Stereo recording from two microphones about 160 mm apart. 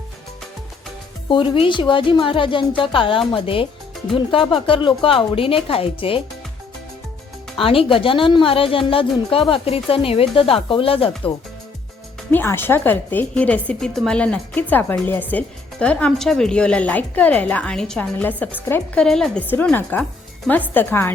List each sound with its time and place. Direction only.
1.3 s speech: 30° left (ahead or behind)
7.6 s speech: 35° left (ahead or behind)
12.3 s a woman's voice: 15° left (ahead or behind)